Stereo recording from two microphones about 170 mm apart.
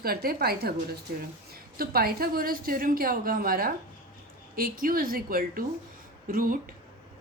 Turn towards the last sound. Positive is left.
turn(degrees=-55)  # may be behind; listen again after turning